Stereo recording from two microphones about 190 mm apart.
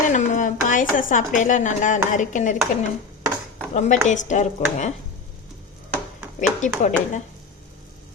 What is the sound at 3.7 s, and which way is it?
Speech, 40° left (ahead or behind).